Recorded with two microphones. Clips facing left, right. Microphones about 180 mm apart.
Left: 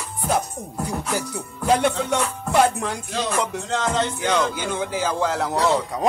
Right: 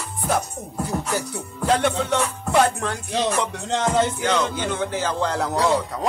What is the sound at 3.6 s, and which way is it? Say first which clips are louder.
Music: right 5 dB; 20° right (ahead or behind).